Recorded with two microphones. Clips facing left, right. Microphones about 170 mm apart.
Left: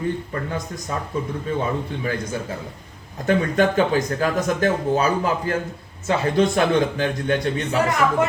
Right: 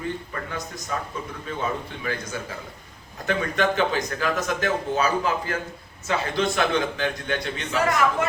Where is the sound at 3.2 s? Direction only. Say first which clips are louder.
Left 5 dB; 40° left (ahead or behind).